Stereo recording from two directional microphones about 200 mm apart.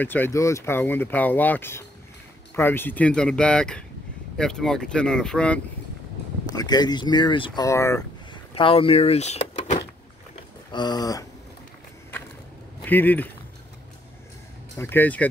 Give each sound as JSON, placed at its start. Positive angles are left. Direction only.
{"t": 0.0, "sound": "speech", "side_deg": 10}
{"t": 6.4, "sound": "speech", "side_deg": 20}
{"t": 8.5, "sound": "speech", "side_deg": 25}
{"t": 10.7, "sound": "speech", "side_deg": 20}
{"t": 12.8, "sound": "speech", "side_deg": 10}
{"t": 14.8, "sound": "speech", "side_deg": 10}